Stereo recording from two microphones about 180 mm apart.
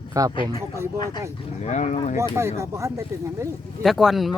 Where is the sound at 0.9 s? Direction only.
25° left (ahead or behind).